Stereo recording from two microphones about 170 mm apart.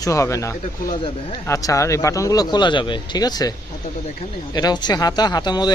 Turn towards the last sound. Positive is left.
turn(degrees=25)  # may be behind; listen again after turning